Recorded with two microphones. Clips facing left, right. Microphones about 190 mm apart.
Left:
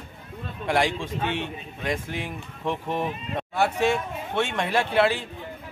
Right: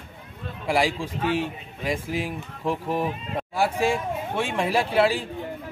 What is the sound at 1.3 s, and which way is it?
A man's voice, 5° right (ahead or behind).